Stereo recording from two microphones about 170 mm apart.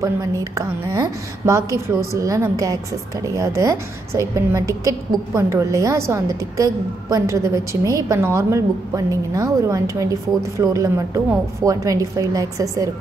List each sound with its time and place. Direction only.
0.0 s a woman's voice: 20° right (ahead or behind)